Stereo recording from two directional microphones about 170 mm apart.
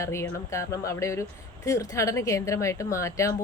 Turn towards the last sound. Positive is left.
turn(degrees=15)  # may be behind; listen again after turning